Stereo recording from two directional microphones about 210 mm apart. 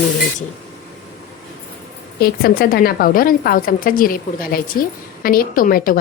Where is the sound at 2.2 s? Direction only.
45° left (ahead or behind).